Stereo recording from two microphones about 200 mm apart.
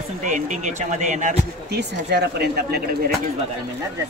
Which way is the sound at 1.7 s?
55° right (ahead or behind).